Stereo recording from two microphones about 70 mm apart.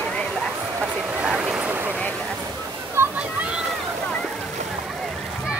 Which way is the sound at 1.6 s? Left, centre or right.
Right.